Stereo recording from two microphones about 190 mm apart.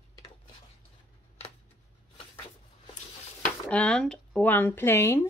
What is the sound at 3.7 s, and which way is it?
Speech, 5° left (ahead or behind).